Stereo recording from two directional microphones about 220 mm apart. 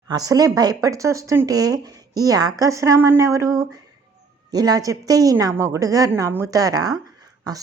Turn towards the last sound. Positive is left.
turn(degrees=-15)  # may be behind; listen again after turning